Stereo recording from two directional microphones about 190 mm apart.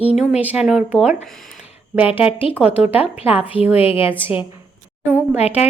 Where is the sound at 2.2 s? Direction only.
30° left (ahead or behind).